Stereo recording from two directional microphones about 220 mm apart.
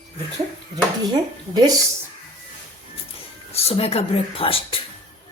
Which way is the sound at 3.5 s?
25° left (ahead or behind).